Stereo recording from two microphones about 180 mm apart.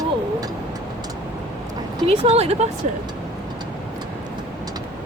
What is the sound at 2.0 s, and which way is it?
Speech, 35° right (ahead or behind).